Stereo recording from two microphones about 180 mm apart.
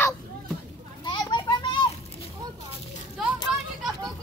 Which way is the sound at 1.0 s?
25° left (ahead or behind).